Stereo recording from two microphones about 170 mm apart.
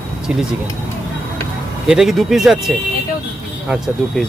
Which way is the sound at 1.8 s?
5° right (ahead or behind).